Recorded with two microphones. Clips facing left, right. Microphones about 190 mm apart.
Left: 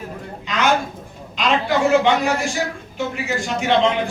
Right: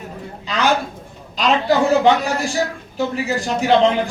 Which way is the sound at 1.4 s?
35° right (ahead or behind).